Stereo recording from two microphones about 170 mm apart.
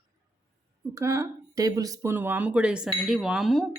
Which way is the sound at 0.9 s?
20° right (ahead or behind).